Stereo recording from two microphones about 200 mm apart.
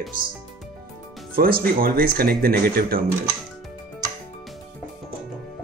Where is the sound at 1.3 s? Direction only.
45° right (ahead or behind).